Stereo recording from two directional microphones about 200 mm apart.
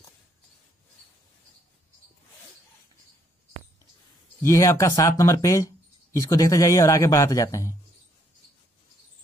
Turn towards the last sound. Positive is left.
turn(degrees=15)  # may be behind; listen again after turning